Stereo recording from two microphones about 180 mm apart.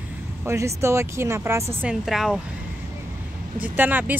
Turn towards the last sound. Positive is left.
turn(degrees=-10)  # may be behind; listen again after turning